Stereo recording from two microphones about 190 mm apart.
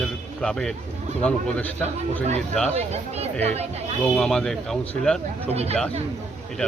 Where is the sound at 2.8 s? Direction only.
35° right (ahead or behind).